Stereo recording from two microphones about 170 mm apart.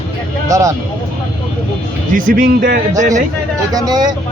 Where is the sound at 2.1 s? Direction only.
55° right (ahead or behind).